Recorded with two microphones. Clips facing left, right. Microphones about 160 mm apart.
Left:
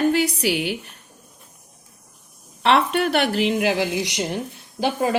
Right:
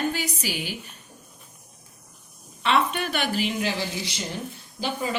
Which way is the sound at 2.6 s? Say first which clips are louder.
Left 5 dB; 65° left (ahead or behind).